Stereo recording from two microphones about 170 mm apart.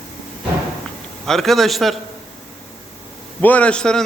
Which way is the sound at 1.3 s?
Centre (ahead or behind).